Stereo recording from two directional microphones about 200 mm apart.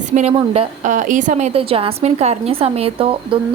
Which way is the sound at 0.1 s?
35° right (ahead or behind).